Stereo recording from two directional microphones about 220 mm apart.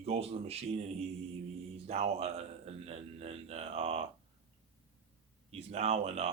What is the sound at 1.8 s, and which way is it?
Speech, 30° right (ahead or behind).